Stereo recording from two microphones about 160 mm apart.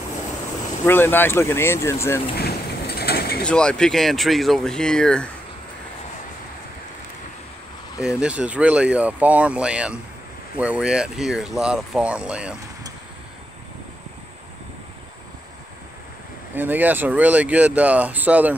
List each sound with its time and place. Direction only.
0.8 s speech: 15° left (ahead or behind)
2.3 s a sound: 80° left
3.4 s speech: 5° left (ahead or behind)
8.2 s speech: 10° right (ahead or behind)
16.5 s speech: 10° right (ahead or behind)